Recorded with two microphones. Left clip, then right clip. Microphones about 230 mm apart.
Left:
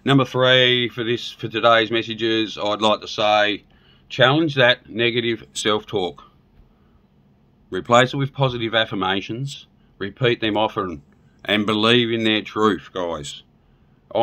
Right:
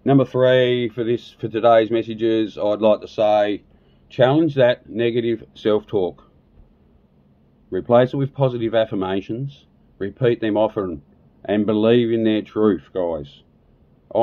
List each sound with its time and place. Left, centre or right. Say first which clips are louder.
0.0 s speech: right 1 dB; left
7.7 s speech: even; centre